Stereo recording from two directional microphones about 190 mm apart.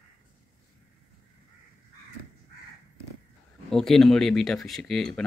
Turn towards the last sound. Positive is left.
turn(degrees=0)  # may be behind; listen again after turning